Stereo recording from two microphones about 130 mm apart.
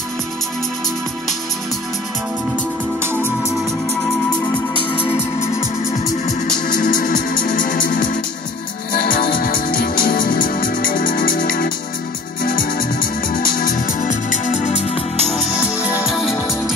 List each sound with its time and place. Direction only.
3.0 s music: 20° right (ahead or behind)
5.0 s music: 20° left (ahead or behind)
6.2 s music: 85° left; by 14.9 s 65° left (ahead or behind)
16.1 s music: centre (ahead or behind)